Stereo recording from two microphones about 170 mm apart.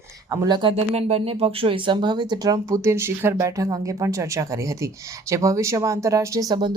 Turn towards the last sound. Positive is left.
turn(degrees=-25)  # may be behind; listen again after turning